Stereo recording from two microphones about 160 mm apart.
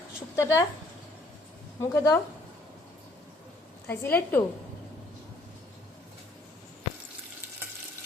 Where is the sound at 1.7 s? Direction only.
20° left (ahead or behind).